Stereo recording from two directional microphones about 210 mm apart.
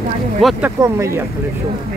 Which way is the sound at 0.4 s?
5° right (ahead or behind).